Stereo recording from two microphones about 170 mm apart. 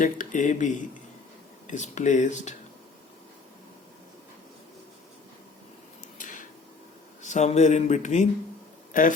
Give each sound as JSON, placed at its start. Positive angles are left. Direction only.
{"t": 0.0, "sound": "speech", "side_deg": 50}
{"t": 6.1, "sound": "a sound", "side_deg": 50}
{"t": 7.2, "sound": "speech", "side_deg": 45}